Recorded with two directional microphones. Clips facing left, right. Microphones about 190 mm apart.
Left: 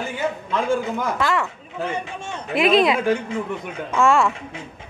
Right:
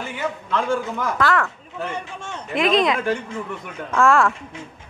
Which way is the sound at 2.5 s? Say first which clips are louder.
Left 2 dB; 5° left (ahead or behind).